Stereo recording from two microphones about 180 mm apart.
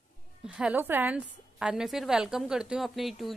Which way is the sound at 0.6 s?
10° right (ahead or behind).